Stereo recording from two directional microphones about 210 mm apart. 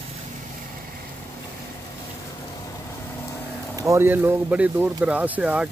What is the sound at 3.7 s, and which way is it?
Speech, 15° right (ahead or behind).